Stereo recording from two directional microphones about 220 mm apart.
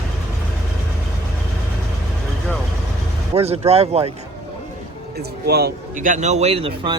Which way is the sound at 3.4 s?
30° right (ahead or behind).